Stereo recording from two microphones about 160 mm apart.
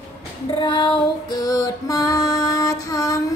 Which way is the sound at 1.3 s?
25° left (ahead or behind).